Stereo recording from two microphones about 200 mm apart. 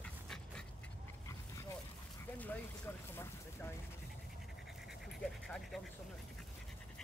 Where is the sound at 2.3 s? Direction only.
10° left (ahead or behind).